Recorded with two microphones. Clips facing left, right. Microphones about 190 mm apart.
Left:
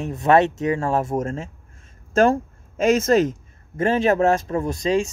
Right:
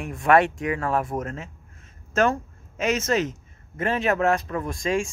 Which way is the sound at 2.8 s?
40° left (ahead or behind).